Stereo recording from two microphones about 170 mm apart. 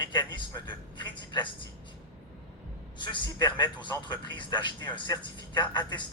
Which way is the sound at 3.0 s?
25° left (ahead or behind).